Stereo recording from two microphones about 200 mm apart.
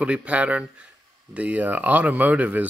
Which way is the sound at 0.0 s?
5° right (ahead or behind).